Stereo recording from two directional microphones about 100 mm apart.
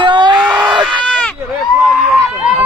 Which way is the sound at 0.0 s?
50° right (ahead or behind).